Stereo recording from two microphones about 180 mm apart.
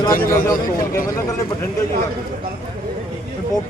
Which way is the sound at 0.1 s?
50° left (ahead or behind).